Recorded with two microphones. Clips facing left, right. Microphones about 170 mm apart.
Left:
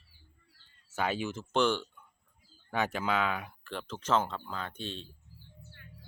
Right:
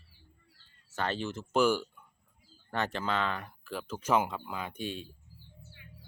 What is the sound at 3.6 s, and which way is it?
Speech, 5° right (ahead or behind).